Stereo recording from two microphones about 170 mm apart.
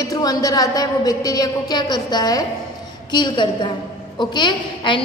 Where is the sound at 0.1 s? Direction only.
20° left (ahead or behind).